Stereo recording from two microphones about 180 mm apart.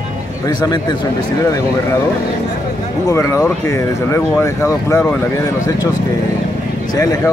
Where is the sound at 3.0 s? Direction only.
15° left (ahead or behind).